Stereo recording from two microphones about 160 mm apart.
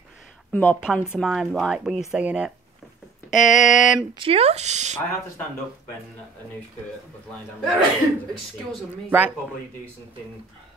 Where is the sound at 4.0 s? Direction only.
35° right (ahead or behind).